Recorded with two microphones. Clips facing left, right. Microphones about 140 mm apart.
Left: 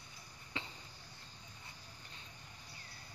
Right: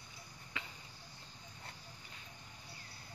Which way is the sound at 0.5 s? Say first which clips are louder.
Left 2 dB; 30° left (ahead or behind).